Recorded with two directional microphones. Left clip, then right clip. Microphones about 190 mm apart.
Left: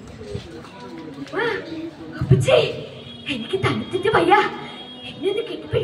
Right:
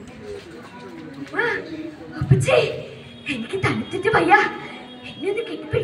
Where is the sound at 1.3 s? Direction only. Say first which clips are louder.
Right 1 dB; 15° left (ahead or behind).